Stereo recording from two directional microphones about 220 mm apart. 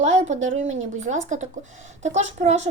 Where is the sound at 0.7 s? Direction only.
30° right (ahead or behind).